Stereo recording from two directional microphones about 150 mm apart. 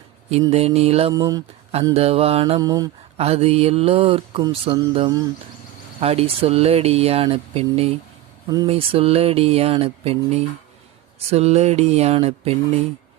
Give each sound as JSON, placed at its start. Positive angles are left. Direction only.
{"t": 0.5, "sound": "speech", "side_deg": -45}
{"t": 1.1, "sound": "speech", "side_deg": -25}
{"t": 1.8, "sound": "speech", "side_deg": -40}
{"t": 2.6, "sound": "speech", "side_deg": -25}
{"t": 3.2, "sound": "speech", "side_deg": -40}
{"t": 4.9, "sound": "speech", "side_deg": -30}
{"t": 6.0, "sound": "speech", "side_deg": -40}